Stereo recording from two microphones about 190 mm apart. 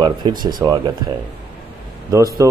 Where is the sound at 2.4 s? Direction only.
15° right (ahead or behind).